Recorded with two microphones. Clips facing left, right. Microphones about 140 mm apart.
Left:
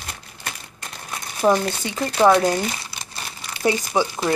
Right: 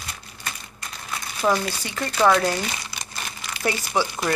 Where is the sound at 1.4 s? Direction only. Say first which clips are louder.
Left 4 dB; 20° left (ahead or behind).